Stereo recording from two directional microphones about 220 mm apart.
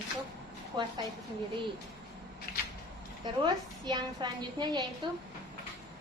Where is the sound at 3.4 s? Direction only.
20° right (ahead or behind).